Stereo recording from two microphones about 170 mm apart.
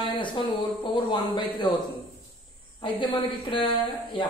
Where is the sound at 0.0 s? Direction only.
30° left (ahead or behind).